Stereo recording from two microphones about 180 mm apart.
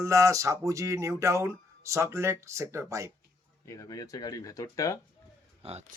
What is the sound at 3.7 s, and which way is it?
Speech, 20° left (ahead or behind).